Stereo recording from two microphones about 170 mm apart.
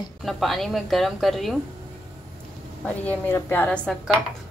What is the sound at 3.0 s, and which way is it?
Speech, 10° left (ahead or behind).